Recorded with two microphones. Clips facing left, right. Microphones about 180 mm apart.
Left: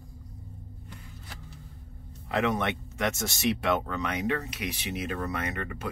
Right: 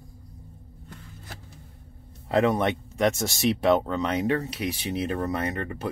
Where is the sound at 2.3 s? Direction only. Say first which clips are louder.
Right 5 dB; 30° right (ahead or behind).